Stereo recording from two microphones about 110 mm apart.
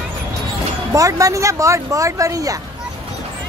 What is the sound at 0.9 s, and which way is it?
Speech, 30° right (ahead or behind).